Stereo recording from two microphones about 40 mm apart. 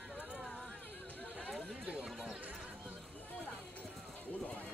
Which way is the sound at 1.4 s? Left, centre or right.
Right.